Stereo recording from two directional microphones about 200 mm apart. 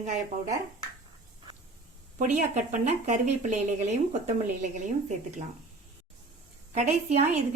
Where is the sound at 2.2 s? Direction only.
40° right (ahead or behind).